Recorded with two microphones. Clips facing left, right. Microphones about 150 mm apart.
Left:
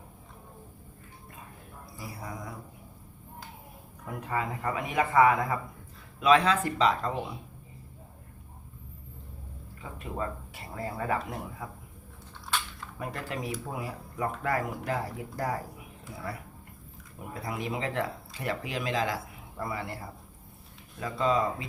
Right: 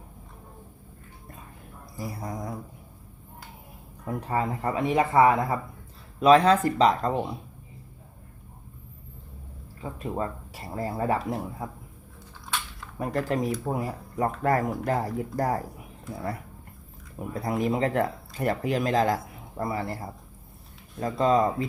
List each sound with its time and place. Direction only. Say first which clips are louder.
2.0 s speech: right 6 dB; 40° right (ahead or behind)
4.0 s speech: right 5 dB; 35° right (ahead or behind)
10.0 s speech: right 4 dB; 35° right (ahead or behind)
13.0 s speech: right 9 dB; 40° right (ahead or behind)
17.4 s speech: right 8 dB; 45° right (ahead or behind)